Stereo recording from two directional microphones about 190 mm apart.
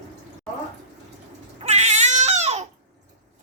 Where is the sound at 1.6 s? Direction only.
35° right (ahead or behind).